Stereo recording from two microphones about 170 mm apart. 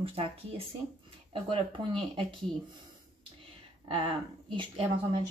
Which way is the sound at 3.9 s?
30° right (ahead or behind).